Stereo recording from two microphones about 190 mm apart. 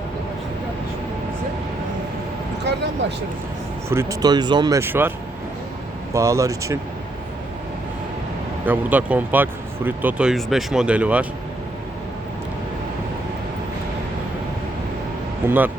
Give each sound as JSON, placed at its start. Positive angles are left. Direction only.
{"t": 2.7, "sound": "speech", "side_deg": -60}
{"t": 3.8, "sound": "speech", "side_deg": -15}
{"t": 6.1, "sound": "speech", "side_deg": -15}
{"t": 8.6, "sound": "speech", "side_deg": -10}
{"t": 15.4, "sound": "speech", "side_deg": -10}